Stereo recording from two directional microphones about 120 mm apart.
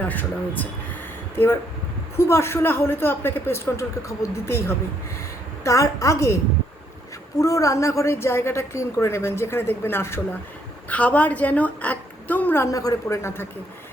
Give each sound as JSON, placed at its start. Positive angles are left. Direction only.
{"t": 0.0, "sound": "a woman's voice", "side_deg": 15}
{"t": 2.1, "sound": "a woman's voice", "side_deg": 20}
{"t": 7.3, "sound": "a woman's voice", "side_deg": 25}